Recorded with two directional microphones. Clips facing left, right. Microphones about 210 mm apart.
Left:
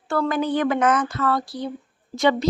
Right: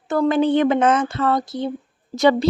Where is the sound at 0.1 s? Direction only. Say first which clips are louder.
Right 5 dB; 20° right (ahead or behind).